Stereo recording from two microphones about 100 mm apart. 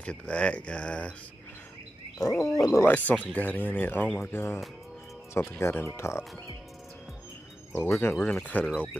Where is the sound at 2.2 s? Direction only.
35° left (ahead or behind).